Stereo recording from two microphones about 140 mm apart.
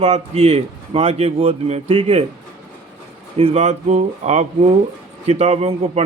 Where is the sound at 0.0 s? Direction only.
50° right (ahead or behind).